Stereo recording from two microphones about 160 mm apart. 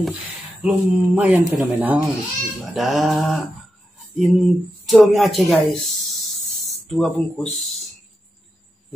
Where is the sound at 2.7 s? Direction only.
Centre (ahead or behind).